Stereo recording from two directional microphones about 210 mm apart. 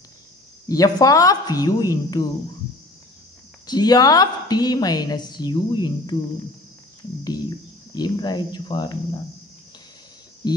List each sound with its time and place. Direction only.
0.7 s a woman's voice: 15° left (ahead or behind)
3.6 s a woman's voice: 20° left (ahead or behind)
7.2 s speech: 20° left (ahead or behind)
10.4 s speech: 20° left (ahead or behind)